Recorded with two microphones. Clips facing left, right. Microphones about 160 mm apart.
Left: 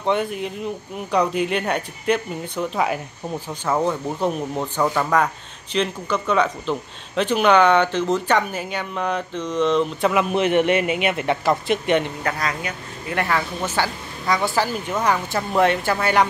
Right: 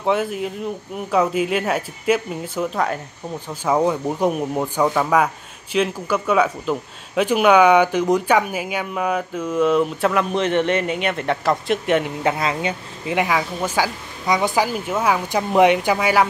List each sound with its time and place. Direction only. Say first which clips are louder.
0.0 s speech: right 1 dB; 5° right (ahead or behind)
3.6 s speech: right 3 dB; 10° right (ahead or behind)
10.1 s a man's voice: left 2 dB; 10° left (ahead or behind)
12.2 s speech: right 4 dB; 25° right (ahead or behind)
13.1 s speech: right 2 dB; 10° right (ahead or behind)